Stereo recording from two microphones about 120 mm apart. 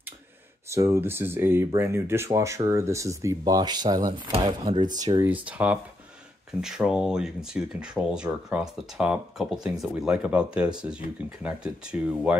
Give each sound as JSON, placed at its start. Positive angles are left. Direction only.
{"t": 0.7, "sound": "speech", "side_deg": -25}
{"t": 5.2, "sound": "speech", "side_deg": -10}